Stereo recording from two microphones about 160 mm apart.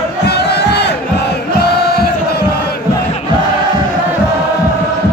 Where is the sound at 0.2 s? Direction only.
90° left.